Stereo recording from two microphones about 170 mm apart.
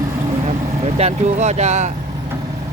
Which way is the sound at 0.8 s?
40° right (ahead or behind).